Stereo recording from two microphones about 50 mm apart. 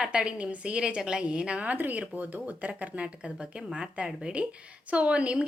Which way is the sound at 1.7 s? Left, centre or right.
Right.